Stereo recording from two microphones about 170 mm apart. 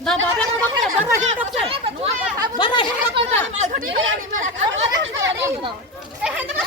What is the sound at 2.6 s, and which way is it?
Speech, 30° left (ahead or behind).